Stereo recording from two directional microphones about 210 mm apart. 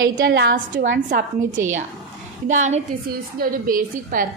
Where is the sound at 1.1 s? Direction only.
40° right (ahead or behind).